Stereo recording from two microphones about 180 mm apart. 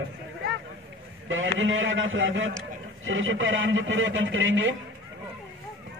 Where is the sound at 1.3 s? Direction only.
90° right.